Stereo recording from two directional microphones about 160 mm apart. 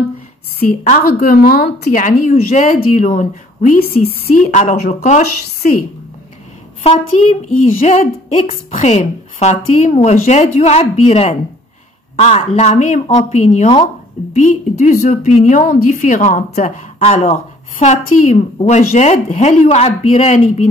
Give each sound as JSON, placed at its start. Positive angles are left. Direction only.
{"t": 0.7, "sound": "a woman's voice", "side_deg": 60}
{"t": 6.8, "sound": "a woman's voice", "side_deg": 45}